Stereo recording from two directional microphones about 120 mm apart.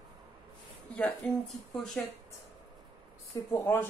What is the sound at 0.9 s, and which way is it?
Speech, 5° left (ahead or behind).